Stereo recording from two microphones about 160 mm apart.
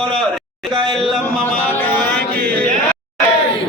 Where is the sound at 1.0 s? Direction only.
5° left (ahead or behind).